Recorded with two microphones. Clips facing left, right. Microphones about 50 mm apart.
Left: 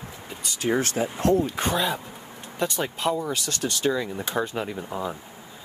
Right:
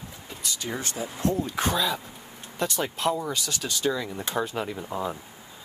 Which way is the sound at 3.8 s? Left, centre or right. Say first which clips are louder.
Left 2 dB; centre.